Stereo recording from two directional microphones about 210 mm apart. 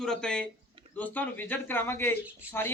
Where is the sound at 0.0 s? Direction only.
5° left (ahead or behind).